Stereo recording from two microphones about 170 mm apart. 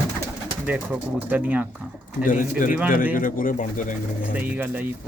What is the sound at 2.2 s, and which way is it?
Speech, 50° left (ahead or behind).